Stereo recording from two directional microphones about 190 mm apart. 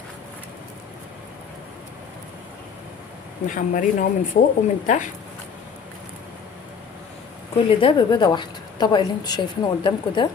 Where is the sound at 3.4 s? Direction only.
45° left (ahead or behind).